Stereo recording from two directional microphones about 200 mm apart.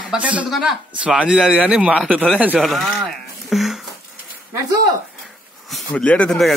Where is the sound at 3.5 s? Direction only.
Centre (ahead or behind).